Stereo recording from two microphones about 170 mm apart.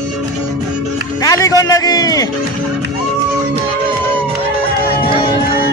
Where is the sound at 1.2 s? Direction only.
20° left (ahead or behind).